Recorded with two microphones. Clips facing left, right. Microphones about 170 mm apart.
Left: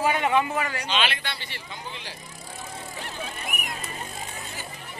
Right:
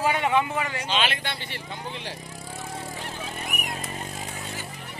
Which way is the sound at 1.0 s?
45° right (ahead or behind).